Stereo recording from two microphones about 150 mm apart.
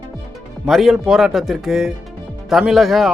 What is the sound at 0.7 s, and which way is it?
Speech, centre (ahead or behind).